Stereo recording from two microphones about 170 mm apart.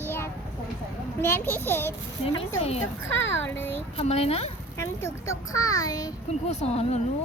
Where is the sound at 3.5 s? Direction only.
10° left (ahead or behind).